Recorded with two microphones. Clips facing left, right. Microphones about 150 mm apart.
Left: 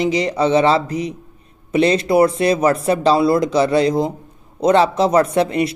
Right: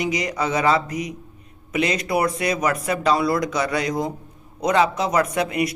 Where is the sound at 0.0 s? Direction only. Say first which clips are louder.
Left 7 dB; 30° left (ahead or behind).